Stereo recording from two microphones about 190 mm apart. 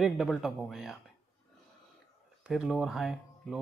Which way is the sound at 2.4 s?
Centre (ahead or behind).